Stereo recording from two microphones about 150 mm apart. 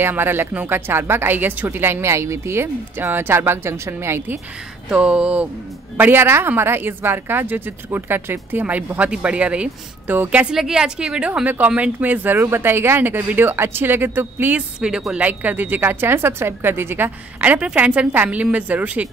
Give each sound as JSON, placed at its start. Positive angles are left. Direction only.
{"t": 0.0, "sound": "a woman's voice", "side_deg": -15}